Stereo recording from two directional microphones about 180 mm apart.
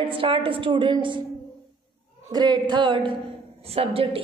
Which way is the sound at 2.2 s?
20° right (ahead or behind).